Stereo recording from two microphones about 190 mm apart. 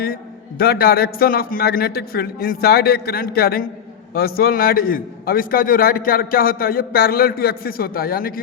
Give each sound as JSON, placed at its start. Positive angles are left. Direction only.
{"t": 0.6, "sound": "a man's voice", "side_deg": 55}